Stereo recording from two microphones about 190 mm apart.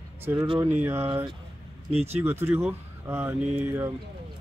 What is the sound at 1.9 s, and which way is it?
Speech, 35° right (ahead or behind).